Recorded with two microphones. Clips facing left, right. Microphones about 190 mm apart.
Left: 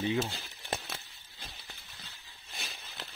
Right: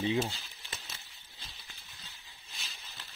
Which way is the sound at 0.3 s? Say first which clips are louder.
Left 8 dB; 60° left (ahead or behind).